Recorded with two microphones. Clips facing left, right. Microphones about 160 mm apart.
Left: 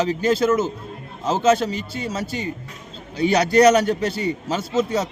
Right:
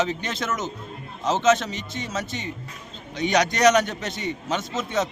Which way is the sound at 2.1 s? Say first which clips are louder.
Left 1 dB; 35° left (ahead or behind).